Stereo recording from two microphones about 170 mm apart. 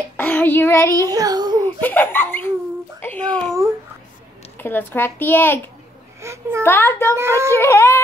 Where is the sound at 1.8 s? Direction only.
10° left (ahead or behind).